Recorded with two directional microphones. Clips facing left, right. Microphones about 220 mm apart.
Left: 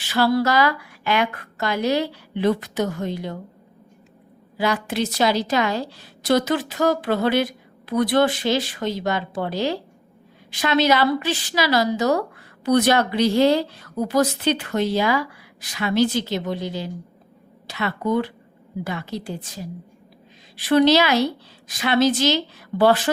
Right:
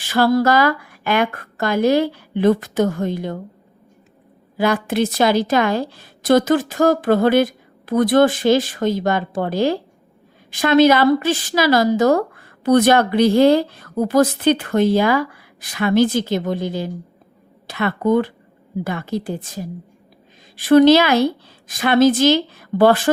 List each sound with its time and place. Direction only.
0.0 s a woman's voice: 50° right (ahead or behind)
4.5 s a woman's voice: 50° right (ahead or behind)